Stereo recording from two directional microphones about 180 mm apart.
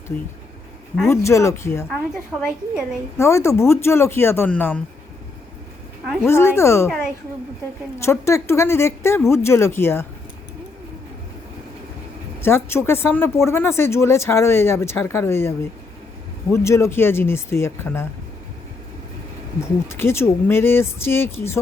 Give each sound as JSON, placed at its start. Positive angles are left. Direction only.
{"t": 1.0, "sound": "speech", "side_deg": 15}
{"t": 3.2, "sound": "speech", "side_deg": 15}
{"t": 6.1, "sound": "speech", "side_deg": 15}
{"t": 12.4, "sound": "speech", "side_deg": 15}
{"t": 19.5, "sound": "speech", "side_deg": 15}